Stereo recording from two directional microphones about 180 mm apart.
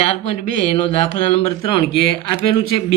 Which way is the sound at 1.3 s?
30° left (ahead or behind).